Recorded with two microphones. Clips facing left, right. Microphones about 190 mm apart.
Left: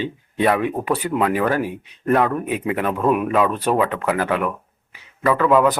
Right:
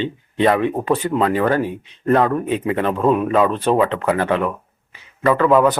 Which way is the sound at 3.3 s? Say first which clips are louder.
Right 2 dB; 25° right (ahead or behind).